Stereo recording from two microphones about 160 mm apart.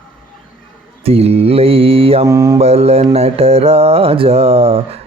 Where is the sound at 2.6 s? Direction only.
40° right (ahead or behind).